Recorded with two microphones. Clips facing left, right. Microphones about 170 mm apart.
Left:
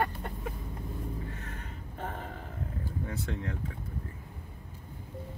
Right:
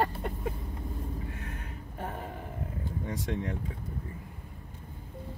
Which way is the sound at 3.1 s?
20° right (ahead or behind).